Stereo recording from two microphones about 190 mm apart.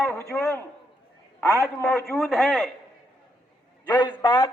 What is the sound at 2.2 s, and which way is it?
Speech, centre (ahead or behind).